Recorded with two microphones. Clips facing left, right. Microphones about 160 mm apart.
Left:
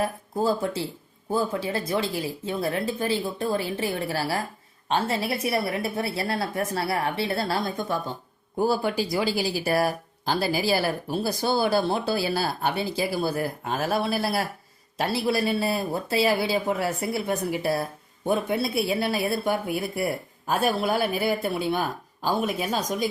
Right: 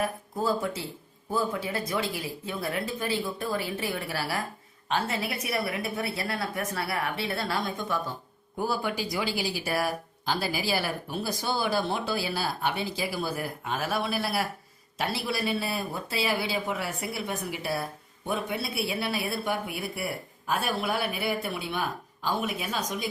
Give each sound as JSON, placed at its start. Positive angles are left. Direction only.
{"t": 0.0, "sound": "speech", "side_deg": 30}
{"t": 18.8, "sound": "speech", "side_deg": 40}